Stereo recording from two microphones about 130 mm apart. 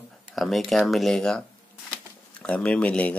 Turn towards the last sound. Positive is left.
turn(degrees=10)  # may be behind; listen again after turning